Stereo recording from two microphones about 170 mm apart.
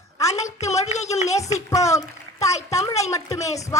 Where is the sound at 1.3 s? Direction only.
20° left (ahead or behind).